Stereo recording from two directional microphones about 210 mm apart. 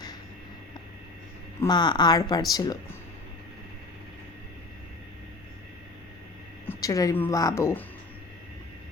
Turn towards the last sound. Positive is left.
turn(degrees=10)  # may be behind; listen again after turning